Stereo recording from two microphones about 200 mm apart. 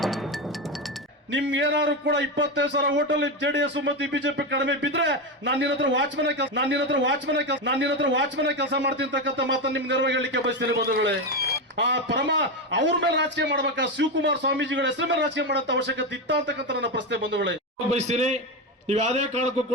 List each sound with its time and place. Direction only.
1.3 s a man's voice: 65° right (ahead or behind)
18.1 s a man's voice: 35° right (ahead or behind)